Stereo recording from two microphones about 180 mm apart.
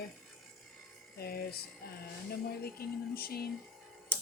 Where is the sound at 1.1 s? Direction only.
60° left (ahead or behind).